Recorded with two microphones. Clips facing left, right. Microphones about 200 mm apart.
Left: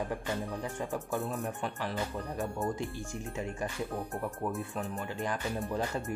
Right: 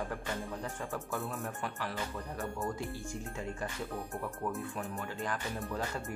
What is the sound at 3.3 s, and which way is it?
Speech, 15° left (ahead or behind).